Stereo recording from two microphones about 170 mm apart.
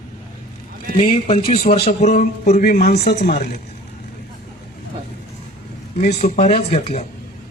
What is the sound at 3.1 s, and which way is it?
Speech, 70° left (ahead or behind).